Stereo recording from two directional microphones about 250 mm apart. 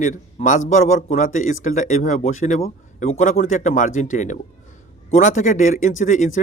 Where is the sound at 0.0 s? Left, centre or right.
Left.